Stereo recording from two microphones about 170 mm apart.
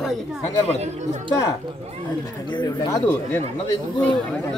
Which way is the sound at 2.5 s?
25° left (ahead or behind).